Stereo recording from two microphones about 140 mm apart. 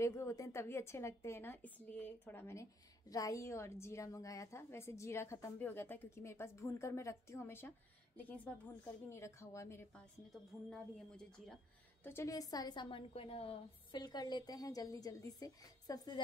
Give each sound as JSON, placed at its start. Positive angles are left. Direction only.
{"t": 0.0, "sound": "a woman's voice", "side_deg": 20}
{"t": 9.9, "sound": "a woman's voice", "side_deg": 5}
{"t": 12.0, "sound": "a woman's voice", "side_deg": 15}
{"t": 13.9, "sound": "a woman's voice", "side_deg": 30}